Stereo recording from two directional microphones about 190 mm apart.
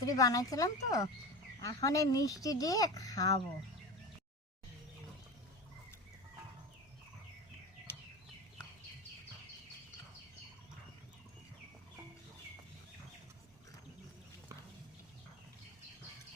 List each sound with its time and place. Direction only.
0.0 s speech: 20° left (ahead or behind)